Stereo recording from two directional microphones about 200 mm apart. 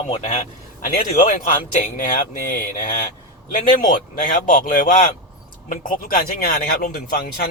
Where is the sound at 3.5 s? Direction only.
40° left (ahead or behind).